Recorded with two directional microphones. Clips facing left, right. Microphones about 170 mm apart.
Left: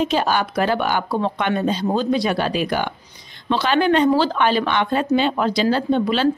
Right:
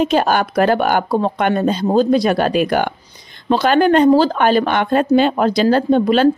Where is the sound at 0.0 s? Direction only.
50° right (ahead or behind).